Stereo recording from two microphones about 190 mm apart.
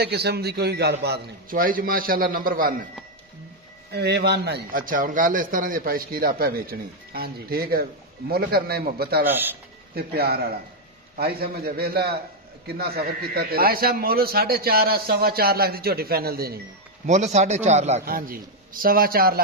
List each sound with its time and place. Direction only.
0.0 s a man's voice: 60° right (ahead or behind)
3.9 s a man's voice: 60° right (ahead or behind)
9.2 s a man's voice: 10° right (ahead or behind)
9.9 s a man's voice: 55° right (ahead or behind)
17.0 s a man's voice: 40° right (ahead or behind)
18.0 s a man's voice: 50° right (ahead or behind)